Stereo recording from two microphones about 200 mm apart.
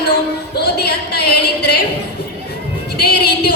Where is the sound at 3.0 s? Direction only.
55° left (ahead or behind).